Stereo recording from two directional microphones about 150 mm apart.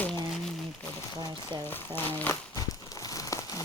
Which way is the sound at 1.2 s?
25° right (ahead or behind).